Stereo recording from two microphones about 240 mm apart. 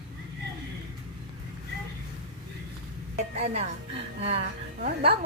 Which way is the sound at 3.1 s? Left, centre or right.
Right.